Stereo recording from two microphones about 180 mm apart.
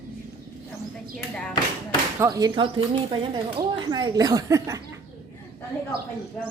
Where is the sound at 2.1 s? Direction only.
15° right (ahead or behind).